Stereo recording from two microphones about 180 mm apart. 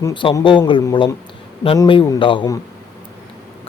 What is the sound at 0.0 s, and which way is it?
Speech, 25° left (ahead or behind).